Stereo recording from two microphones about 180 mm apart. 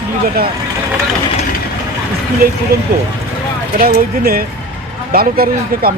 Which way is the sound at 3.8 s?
55° right (ahead or behind).